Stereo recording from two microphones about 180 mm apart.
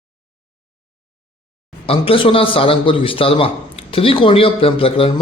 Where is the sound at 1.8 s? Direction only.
30° left (ahead or behind).